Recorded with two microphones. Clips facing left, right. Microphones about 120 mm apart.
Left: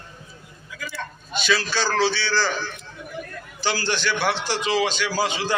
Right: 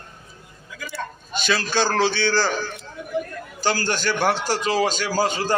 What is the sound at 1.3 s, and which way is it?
A man's voice, 45° right (ahead or behind).